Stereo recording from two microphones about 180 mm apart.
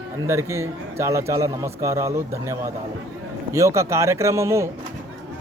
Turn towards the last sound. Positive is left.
turn(degrees=-15)  # may be behind; listen again after turning